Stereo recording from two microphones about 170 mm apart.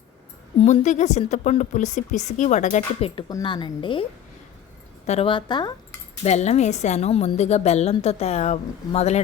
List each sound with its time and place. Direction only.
0.6 s speech: 45° left (ahead or behind)
3.2 s a woman's voice: 25° left (ahead or behind)
5.0 s a woman's voice: 35° left (ahead or behind)
6.2 s a woman's voice: 40° left (ahead or behind)